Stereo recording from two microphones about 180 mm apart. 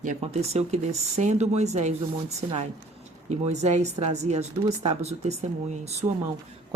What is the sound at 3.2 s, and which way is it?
Speech, 40° right (ahead or behind).